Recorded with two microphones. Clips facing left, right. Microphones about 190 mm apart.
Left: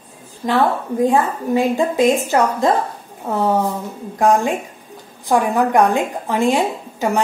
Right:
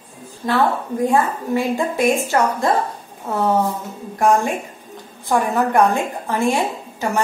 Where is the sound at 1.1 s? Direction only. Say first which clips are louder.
Right 1 dB; 15° left (ahead or behind).